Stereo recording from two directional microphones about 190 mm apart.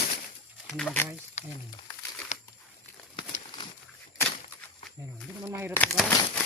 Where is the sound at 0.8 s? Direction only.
5° left (ahead or behind).